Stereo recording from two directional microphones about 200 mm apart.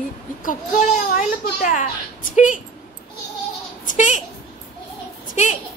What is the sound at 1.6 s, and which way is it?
A woman's voice, 40° left (ahead or behind).